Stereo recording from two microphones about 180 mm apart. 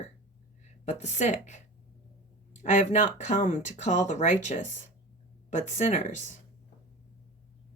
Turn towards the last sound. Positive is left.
turn(degrees=45)  # may be behind; listen again after turning